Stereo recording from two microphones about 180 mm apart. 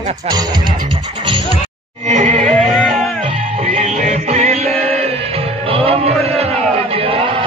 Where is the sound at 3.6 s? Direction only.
40° right (ahead or behind).